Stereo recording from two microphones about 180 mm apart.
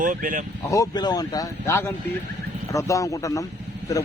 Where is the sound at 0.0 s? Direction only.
50° right (ahead or behind).